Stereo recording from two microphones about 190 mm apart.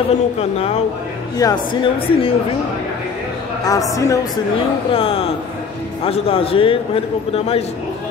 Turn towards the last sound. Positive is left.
turn(degrees=30)  # may be behind; listen again after turning